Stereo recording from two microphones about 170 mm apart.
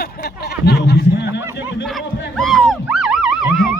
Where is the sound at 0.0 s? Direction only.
70° left (ahead or behind).